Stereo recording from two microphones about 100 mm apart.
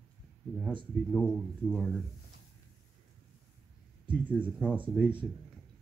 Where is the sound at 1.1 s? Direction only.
10° left (ahead or behind).